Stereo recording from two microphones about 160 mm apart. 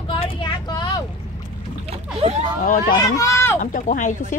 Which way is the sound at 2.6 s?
55° left (ahead or behind).